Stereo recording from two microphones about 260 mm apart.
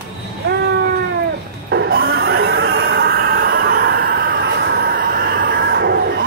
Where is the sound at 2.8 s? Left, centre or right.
Right.